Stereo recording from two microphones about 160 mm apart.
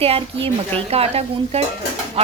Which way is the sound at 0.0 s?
35° right (ahead or behind).